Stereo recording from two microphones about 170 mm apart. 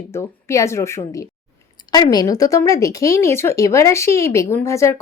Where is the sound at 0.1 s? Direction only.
15° left (ahead or behind).